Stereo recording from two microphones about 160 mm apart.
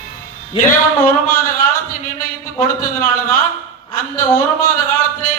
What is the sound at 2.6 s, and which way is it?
Speech, 60° left (ahead or behind).